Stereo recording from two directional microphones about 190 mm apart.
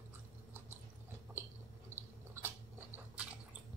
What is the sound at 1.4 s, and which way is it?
Biting, 10° right (ahead or behind).